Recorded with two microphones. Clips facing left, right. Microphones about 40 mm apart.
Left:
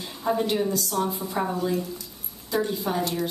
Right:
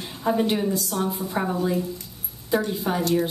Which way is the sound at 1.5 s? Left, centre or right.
Centre.